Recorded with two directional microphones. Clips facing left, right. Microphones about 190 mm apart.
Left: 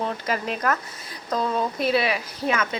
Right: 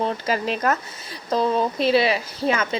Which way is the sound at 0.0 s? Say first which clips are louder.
Right 3 dB; 30° right (ahead or behind).